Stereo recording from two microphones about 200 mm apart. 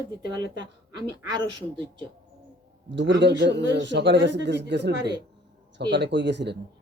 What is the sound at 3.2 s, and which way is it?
Speech, 60° right (ahead or behind).